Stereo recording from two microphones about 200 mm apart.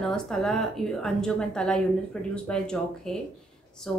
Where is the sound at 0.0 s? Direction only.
5° left (ahead or behind).